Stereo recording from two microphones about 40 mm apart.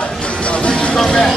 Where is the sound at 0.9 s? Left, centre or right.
Centre.